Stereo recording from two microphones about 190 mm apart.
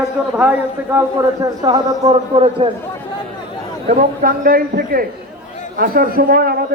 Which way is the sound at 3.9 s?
45° right (ahead or behind).